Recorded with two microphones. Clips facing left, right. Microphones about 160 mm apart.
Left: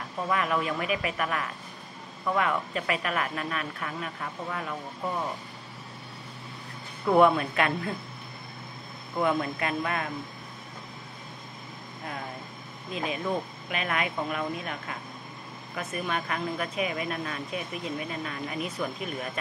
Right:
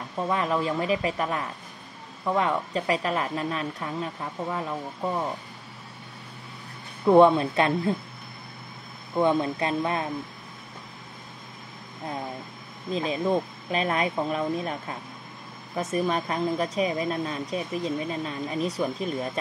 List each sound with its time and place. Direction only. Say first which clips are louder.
0.3 s speech: right 2 dB; 30° right (ahead or behind)
7.1 s speech: right 4 dB; 25° right (ahead or behind)
9.1 s speech: right 4 dB; 25° right (ahead or behind)
12.9 s speech: right 5 dB; 30° right (ahead or behind)